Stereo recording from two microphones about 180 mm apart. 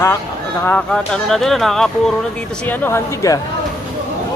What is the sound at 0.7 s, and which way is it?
Speech, 5° left (ahead or behind).